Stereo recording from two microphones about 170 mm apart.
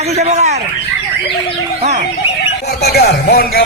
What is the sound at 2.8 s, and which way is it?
Speech, 65° left (ahead or behind).